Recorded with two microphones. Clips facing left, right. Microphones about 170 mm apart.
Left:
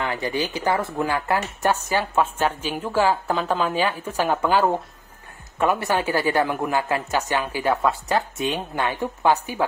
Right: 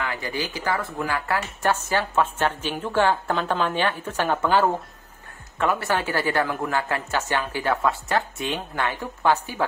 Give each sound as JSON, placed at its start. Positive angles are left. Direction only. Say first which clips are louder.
{"t": 0.0, "sound": "speech", "louder": "left 4 dB", "side_deg": 25}